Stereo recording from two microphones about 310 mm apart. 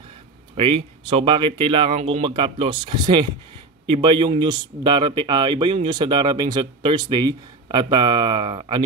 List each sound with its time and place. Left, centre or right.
0.6 s a man's voice: centre